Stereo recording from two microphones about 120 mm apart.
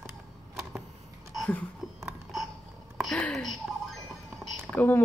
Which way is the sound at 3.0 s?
5° left (ahead or behind).